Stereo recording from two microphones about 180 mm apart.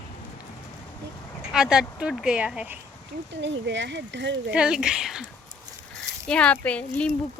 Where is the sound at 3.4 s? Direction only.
90° right.